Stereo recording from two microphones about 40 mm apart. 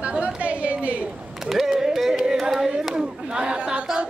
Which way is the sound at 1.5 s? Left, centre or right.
Centre.